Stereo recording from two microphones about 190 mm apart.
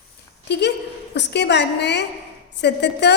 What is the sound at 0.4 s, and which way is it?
A woman's voice, 60° left (ahead or behind).